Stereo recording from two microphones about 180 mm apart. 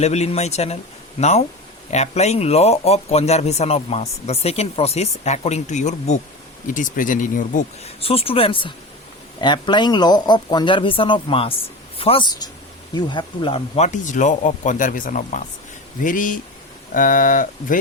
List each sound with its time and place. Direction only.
0.0 s speech: 35° left (ahead or behind)
8.0 s speech: 30° left (ahead or behind); by 17.7 s 50° left (ahead or behind)